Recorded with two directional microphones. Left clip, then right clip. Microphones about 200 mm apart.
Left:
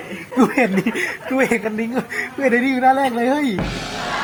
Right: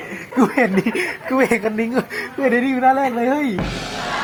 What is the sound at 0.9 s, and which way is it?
Speech, 30° right (ahead or behind).